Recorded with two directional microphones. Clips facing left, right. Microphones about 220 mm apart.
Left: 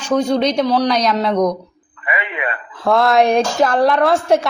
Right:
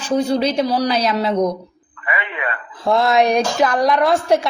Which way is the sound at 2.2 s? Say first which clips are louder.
Left 2 dB; 20° left (ahead or behind).